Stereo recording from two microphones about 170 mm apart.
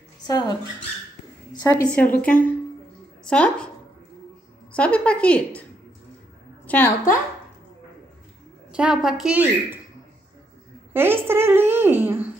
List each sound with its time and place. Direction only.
0.3 s a woman's voice: 25° left (ahead or behind)
1.6 s a woman's voice: 20° left (ahead or behind)
2.2 s a woman's voice: 10° left (ahead or behind)
4.7 s a woman's voice: 5° left (ahead or behind)
6.7 s a woman's voice: 15° left (ahead or behind)
8.7 s a woman's voice: 5° right (ahead or behind)
10.9 s a woman's voice: 15° right (ahead or behind)